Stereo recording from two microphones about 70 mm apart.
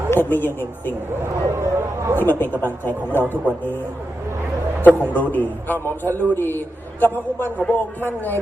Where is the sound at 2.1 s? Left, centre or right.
Left.